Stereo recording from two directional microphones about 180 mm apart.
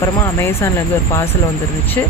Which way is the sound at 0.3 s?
15° left (ahead or behind).